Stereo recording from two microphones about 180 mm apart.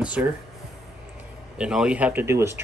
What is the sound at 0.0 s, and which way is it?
Speech, 5° right (ahead or behind).